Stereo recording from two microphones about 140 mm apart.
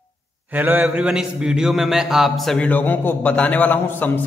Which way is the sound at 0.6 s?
10° right (ahead or behind).